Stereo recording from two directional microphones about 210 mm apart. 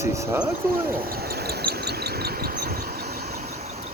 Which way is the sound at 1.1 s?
45° right (ahead or behind).